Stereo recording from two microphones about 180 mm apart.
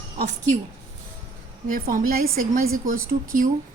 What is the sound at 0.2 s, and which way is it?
Speech, 40° right (ahead or behind).